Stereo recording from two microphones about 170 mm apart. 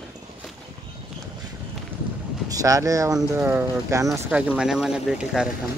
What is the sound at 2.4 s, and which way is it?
Speech, 20° right (ahead or behind).